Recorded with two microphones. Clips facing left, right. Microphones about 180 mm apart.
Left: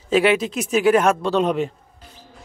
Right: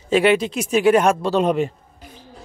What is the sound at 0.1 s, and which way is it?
A man's voice, centre (ahead or behind).